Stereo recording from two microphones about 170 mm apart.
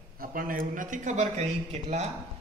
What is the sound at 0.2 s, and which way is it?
A man's voice, 55° right (ahead or behind).